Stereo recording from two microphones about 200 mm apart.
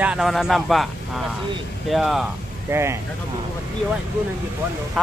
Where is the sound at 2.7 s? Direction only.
15° right (ahead or behind).